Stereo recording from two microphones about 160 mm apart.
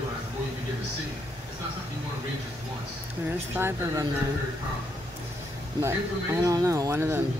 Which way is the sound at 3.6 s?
15° right (ahead or behind).